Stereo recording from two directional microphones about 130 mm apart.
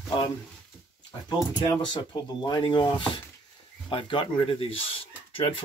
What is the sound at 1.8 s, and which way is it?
Speech, 35° left (ahead or behind).